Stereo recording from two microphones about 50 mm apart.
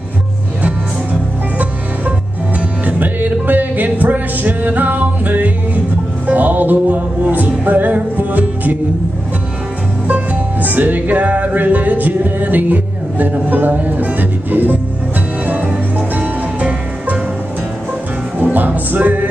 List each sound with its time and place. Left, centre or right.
2.9 s music: right
10.0 s music: right
18.4 s music: right